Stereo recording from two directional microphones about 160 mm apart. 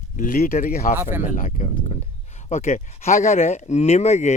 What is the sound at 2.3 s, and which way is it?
Speech, 45° left (ahead or behind).